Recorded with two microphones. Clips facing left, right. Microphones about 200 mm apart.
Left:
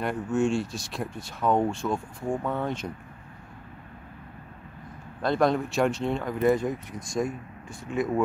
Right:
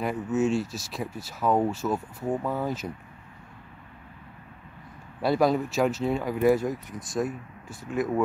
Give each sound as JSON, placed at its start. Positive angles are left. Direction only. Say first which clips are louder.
{"t": 0.0, "sound": "speech", "louder": "even", "side_deg": -5}
{"t": 5.2, "sound": "speech", "louder": "right 1 dB", "side_deg": -5}